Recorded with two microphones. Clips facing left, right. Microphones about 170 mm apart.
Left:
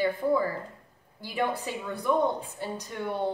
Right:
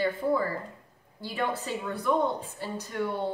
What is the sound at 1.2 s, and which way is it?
A woman's voice, 15° left (ahead or behind).